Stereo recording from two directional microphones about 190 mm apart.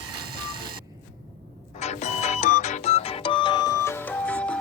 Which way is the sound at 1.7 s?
35° left (ahead or behind).